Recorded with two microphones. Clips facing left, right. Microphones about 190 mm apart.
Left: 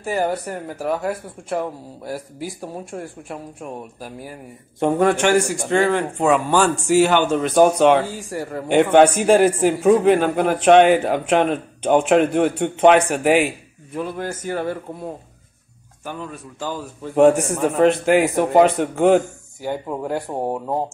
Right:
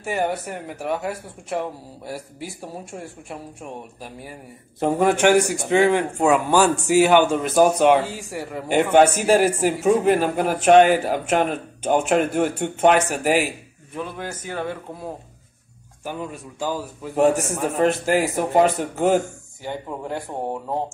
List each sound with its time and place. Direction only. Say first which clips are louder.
0.0 s a man's voice: left 2 dB; 5° right (ahead or behind)
4.7 s a man's voice: left 2 dB; centre (ahead or behind)
14.5 s speech: left 4 dB; 10° left (ahead or behind)
16.0 s a man's voice: right 1 dB; 15° right (ahead or behind)
20.3 s speech: left 4 dB; 40° left (ahead or behind)